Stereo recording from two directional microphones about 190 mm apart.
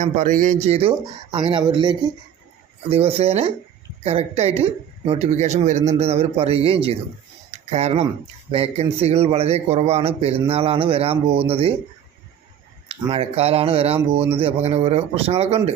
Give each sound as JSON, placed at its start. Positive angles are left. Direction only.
{"t": 0.0, "sound": "speech", "side_deg": -45}
{"t": 7.5, "sound": "a sound", "side_deg": -35}
{"t": 8.4, "sound": "speech", "side_deg": -30}
{"t": 12.9, "sound": "speech", "side_deg": -30}